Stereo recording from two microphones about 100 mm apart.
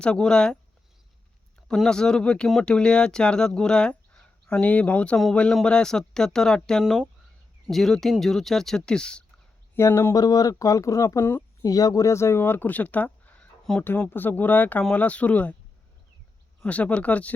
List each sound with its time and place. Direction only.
0.0 s speech: 10° left (ahead or behind)
1.6 s speech: 5° left (ahead or behind)
9.7 s speech: 25° left (ahead or behind)
10.2 s speech: 40° left (ahead or behind); by 11.4 s 25° left (ahead or behind)
11.6 s speech: 40° left (ahead or behind); by 15.5 s 15° left (ahead or behind)
16.6 s speech: 15° left (ahead or behind)